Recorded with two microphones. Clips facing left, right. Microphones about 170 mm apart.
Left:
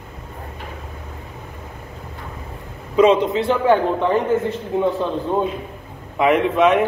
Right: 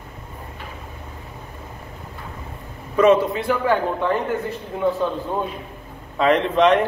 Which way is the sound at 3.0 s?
15° left (ahead or behind).